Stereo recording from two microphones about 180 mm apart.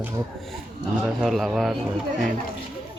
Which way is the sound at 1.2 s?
Centre (ahead or behind).